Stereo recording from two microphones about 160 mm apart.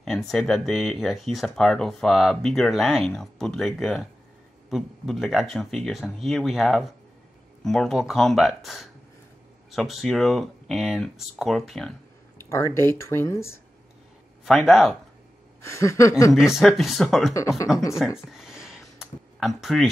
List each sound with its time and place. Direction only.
0.3 s speech: centre (ahead or behind)
12.4 s speech: 15° left (ahead or behind)
14.4 s speech: centre (ahead or behind)
15.6 s speech: 15° left (ahead or behind)
16.3 s speech: centre (ahead or behind)
17.9 s a sound: centre (ahead or behind)